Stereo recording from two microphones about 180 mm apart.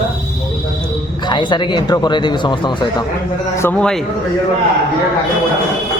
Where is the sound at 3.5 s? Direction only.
15° left (ahead or behind).